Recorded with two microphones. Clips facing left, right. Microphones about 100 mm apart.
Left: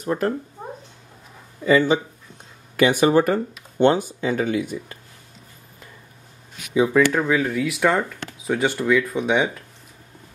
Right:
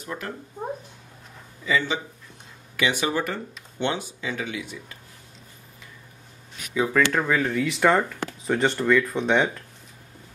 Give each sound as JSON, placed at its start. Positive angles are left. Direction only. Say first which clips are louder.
{"t": 0.0, "sound": "speech", "louder": "left 11 dB", "side_deg": 40}
{"t": 1.6, "sound": "speech", "louder": "left 8 dB", "side_deg": 45}
{"t": 6.7, "sound": "speech", "louder": "left 5 dB", "side_deg": 15}